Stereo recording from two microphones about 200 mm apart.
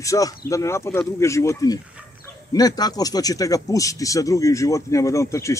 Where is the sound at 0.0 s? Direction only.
15° left (ahead or behind).